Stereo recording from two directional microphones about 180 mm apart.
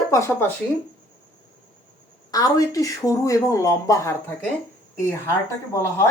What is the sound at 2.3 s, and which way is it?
Speech, 20° left (ahead or behind).